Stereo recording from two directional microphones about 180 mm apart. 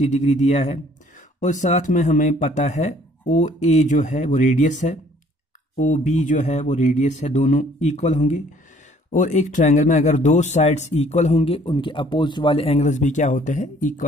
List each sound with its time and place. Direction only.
0.0 s speech: 40° left (ahead or behind)